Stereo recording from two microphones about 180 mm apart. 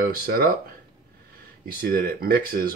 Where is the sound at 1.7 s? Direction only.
55° right (ahead or behind).